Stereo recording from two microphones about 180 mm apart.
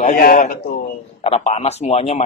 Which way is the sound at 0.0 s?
50° left (ahead or behind).